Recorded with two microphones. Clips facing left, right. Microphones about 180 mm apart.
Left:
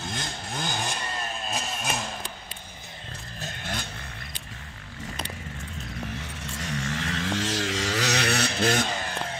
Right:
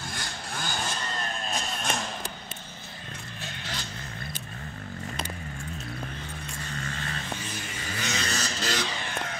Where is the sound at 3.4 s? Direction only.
55° left (ahead or behind).